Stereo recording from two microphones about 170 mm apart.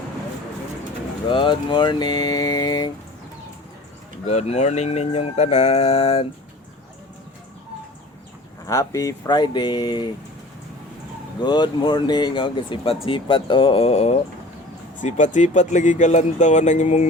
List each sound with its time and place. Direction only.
1.3 s speech: 30° left (ahead or behind)
4.3 s speech: 40° left (ahead or behind)
8.6 s speech: 20° left (ahead or behind)
11.3 s speech: 25° left (ahead or behind); by 17.1 s 45° left (ahead or behind)